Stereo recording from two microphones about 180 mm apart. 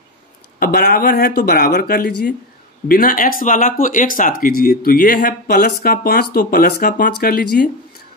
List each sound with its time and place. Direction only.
0.6 s speech: 55° left (ahead or behind)